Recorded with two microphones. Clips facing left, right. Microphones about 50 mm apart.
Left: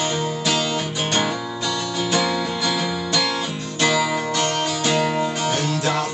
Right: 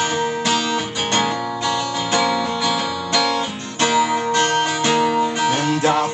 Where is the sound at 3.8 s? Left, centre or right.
Right.